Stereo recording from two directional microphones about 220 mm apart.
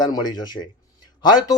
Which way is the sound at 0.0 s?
20° left (ahead or behind).